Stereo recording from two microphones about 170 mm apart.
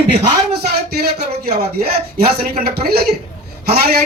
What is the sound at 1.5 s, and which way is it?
A man's voice, 60° right (ahead or behind).